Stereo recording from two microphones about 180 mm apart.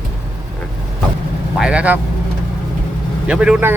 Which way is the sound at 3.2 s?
5° right (ahead or behind).